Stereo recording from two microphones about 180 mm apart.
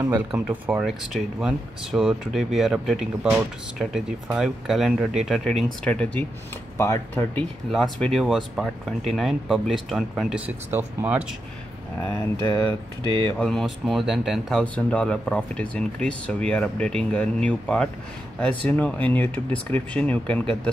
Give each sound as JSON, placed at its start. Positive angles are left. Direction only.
{"t": 0.0, "sound": "speech", "side_deg": -10}
{"t": 7.7, "sound": "speech", "side_deg": 0}
{"t": 12.0, "sound": "speech", "side_deg": 10}
{"t": 12.4, "sound": "speech", "side_deg": 25}
{"t": 13.4, "sound": "speech", "side_deg": 0}